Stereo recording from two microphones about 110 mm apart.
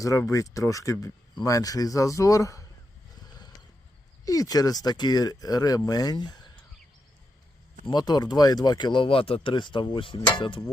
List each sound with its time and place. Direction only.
0.0 s speech: 30° left (ahead or behind)
4.3 s speech: 35° left (ahead or behind)
7.9 s speech: 40° left (ahead or behind)